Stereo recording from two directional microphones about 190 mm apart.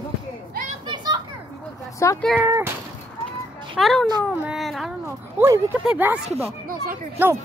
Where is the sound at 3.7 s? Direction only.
Centre (ahead or behind).